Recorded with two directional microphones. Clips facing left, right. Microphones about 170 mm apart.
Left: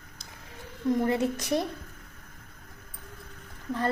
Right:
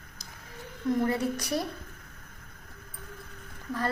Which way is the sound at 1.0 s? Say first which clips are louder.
Left 2 dB; 20° left (ahead or behind).